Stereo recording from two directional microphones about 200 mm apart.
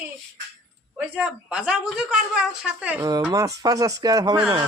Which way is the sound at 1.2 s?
5° right (ahead or behind).